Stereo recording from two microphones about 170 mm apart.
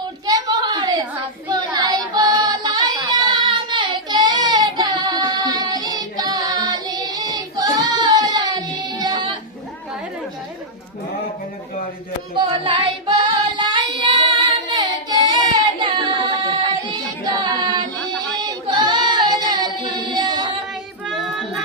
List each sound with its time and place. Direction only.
0.3 s a sound: 20° right (ahead or behind)
1.5 s child singing: 25° right (ahead or behind)
12.3 s child singing: 30° right (ahead or behind)
17.2 s child singing: 25° right (ahead or behind)
18.3 s female singing: 25° right (ahead or behind)
20.1 s child singing: 25° right (ahead or behind)
21.1 s child singing: centre (ahead or behind)